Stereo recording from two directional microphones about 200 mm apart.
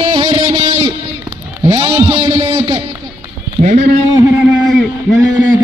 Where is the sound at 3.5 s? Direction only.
35° right (ahead or behind).